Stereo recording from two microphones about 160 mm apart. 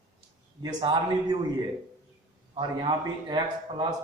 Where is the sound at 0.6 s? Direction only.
25° right (ahead or behind).